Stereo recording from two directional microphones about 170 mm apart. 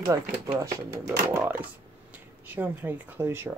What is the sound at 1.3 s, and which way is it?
Speech, 10° right (ahead or behind).